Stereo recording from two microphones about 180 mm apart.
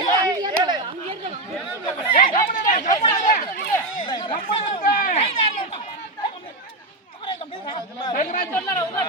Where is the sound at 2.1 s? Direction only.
45° left (ahead or behind).